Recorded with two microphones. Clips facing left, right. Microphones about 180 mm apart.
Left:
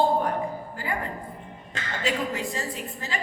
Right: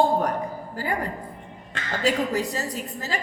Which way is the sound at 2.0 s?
40° right (ahead or behind).